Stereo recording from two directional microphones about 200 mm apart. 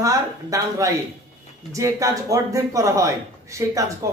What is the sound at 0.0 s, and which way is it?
Speech, 15° right (ahead or behind).